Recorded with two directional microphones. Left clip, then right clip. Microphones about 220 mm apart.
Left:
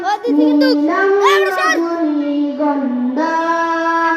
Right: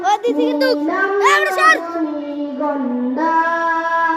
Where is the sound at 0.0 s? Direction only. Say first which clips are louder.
Left 1 dB; 15° right (ahead or behind).